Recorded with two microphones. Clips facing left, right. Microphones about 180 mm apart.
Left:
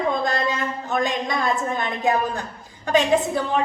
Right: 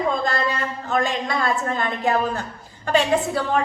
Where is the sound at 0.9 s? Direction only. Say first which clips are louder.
Right 1 dB; 15° left (ahead or behind).